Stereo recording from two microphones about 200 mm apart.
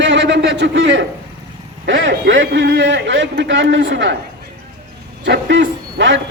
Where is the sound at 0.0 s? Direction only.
65° right (ahead or behind).